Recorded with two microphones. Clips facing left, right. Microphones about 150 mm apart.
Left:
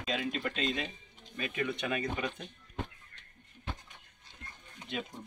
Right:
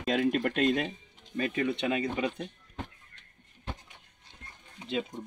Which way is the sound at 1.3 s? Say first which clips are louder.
Right 6 dB; 35° right (ahead or behind).